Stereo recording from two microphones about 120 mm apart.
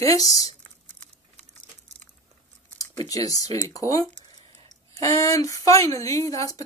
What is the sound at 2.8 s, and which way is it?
Speech, 30° left (ahead or behind).